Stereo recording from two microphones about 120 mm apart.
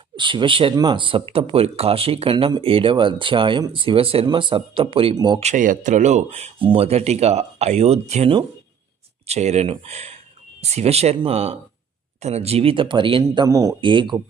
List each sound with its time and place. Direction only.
0.2 s speech: 40° right (ahead or behind)
5.1 s speech: 35° right (ahead or behind)
5.4 s speech: 80° right
6.6 s speech: 50° right (ahead or behind)
13.5 s speech: 25° right (ahead or behind)
13.8 s speech: 40° right (ahead or behind)